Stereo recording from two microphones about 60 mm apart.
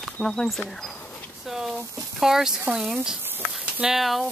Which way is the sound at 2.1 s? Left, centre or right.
Centre.